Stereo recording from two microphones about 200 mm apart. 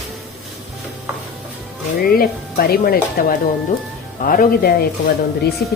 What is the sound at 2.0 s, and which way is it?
Speech, 50° left (ahead or behind).